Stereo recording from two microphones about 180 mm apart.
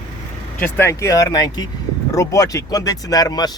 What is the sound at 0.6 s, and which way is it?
Speech, 15° left (ahead or behind).